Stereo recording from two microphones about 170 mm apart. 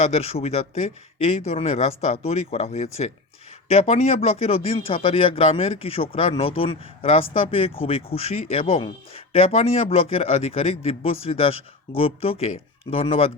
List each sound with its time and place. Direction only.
0.0 s a man's voice: 40° left (ahead or behind)